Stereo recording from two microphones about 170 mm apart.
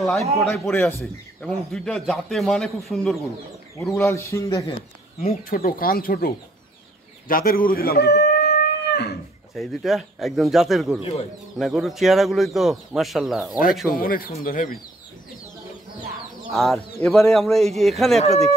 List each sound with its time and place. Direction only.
0.0 s a man's voice: centre (ahead or behind)
0.5 s a sound: 10° left (ahead or behind)
1.4 s speech: 5° left (ahead or behind)
3.9 s a sound: 15° left (ahead or behind)
4.5 s speech: 25° left (ahead or behind)
5.4 s speech: 60° left (ahead or behind)
7.2 s livestock: 55° left (ahead or behind); by 9.1 s 70° left (ahead or behind)
9.6 s speech: centre (ahead or behind)
11.0 s speech: 35° left (ahead or behind)
11.5 s speech: centre (ahead or behind)
13.8 s speech: 55° left (ahead or behind)
16.5 s speech: 5° left (ahead or behind)